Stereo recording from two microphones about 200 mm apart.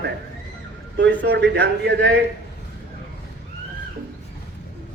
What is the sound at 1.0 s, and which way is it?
A man's voice, 60° right (ahead or behind).